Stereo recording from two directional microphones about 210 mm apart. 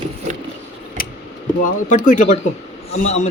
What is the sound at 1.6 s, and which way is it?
Speech, 40° left (ahead or behind).